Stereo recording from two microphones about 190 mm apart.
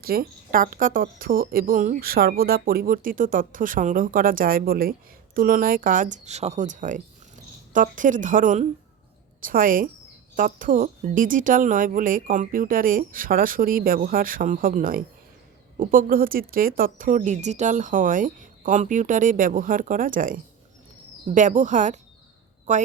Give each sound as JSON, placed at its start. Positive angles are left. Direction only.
{"t": 0.0, "sound": "speech", "side_deg": -50}